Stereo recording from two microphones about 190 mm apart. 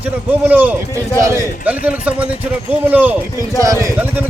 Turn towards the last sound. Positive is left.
turn(degrees=-15)  # may be behind; listen again after turning